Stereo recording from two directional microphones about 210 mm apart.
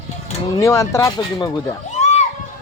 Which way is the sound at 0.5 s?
15° left (ahead or behind).